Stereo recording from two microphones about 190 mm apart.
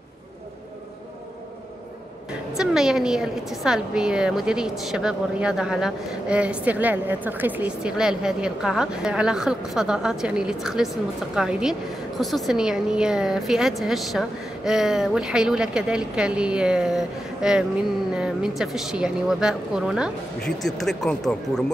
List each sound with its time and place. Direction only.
2.5 s a woman's voice: centre (ahead or behind)